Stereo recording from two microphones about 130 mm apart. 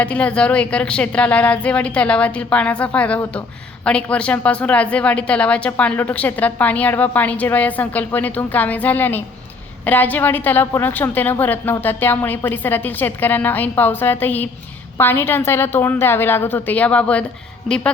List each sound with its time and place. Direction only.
0.0 s a woman's voice: 10° left (ahead or behind)